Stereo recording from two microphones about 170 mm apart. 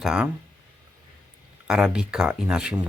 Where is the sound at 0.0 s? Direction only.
5° right (ahead or behind).